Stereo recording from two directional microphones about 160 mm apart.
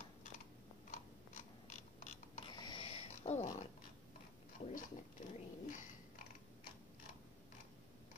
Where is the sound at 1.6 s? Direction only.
50° left (ahead or behind).